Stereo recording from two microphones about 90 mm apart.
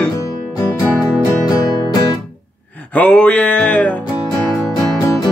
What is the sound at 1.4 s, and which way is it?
Music, 45° left (ahead or behind).